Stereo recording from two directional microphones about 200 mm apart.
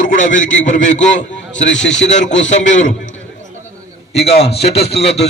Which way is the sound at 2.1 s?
65° left (ahead or behind).